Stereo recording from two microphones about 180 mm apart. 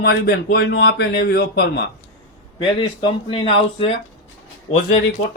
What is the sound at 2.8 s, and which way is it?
Speech, 30° left (ahead or behind).